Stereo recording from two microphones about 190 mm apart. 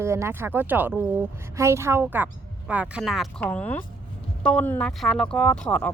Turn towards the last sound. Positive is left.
turn(degrees=5)  # may be behind; listen again after turning